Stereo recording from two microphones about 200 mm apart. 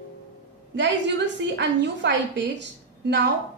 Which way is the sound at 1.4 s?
60° right (ahead or behind).